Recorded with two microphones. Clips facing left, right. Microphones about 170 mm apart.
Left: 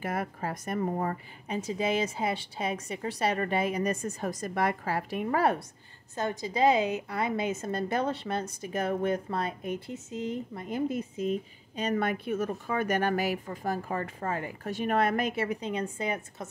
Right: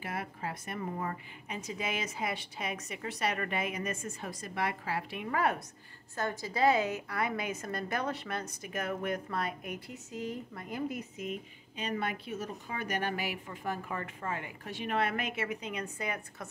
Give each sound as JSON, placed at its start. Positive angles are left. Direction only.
{"t": 0.0, "sound": "a woman's voice", "side_deg": 45}
{"t": 6.1, "sound": "a woman's voice", "side_deg": 20}